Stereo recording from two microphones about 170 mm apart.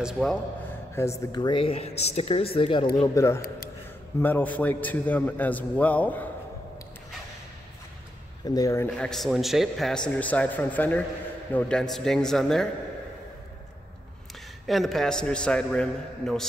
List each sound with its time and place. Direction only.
0.0 s a man's voice: 5° left (ahead or behind)
1.0 s a man's voice: 15° left (ahead or behind)
1.3 s speech: 25° left (ahead or behind)
3.2 s a man's voice: 15° left (ahead or behind)
8.5 s speech: 20° left (ahead or behind)
8.9 s a man's voice: 5° left (ahead or behind)
14.7 s a man's voice: centre (ahead or behind)